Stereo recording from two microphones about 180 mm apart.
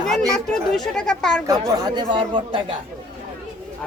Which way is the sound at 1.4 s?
20° right (ahead or behind).